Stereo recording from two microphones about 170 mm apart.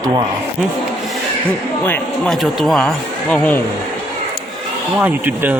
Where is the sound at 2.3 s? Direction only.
Centre (ahead or behind).